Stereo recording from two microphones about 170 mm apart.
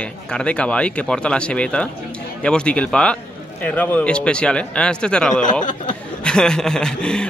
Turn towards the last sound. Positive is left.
turn(degrees=5)  # may be behind; listen again after turning